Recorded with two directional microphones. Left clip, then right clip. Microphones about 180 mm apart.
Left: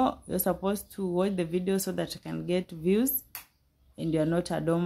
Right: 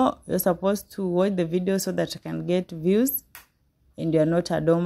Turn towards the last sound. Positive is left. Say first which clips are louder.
# right 6 dB
turn(degrees=-35)  # may be behind; listen again after turning